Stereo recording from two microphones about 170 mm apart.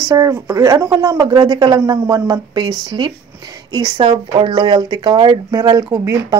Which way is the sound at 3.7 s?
25° right (ahead or behind).